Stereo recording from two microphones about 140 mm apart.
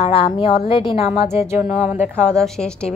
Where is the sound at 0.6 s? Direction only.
40° left (ahead or behind).